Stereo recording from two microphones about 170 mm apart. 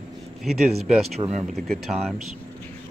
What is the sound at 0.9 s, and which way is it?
Speech, centre (ahead or behind).